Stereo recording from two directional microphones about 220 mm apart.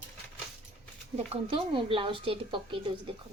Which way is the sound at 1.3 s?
25° right (ahead or behind).